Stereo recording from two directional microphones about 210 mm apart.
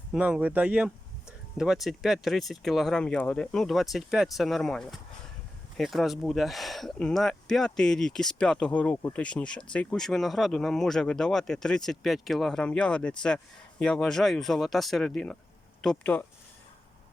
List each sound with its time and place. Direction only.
0.1 s speech: 5° right (ahead or behind)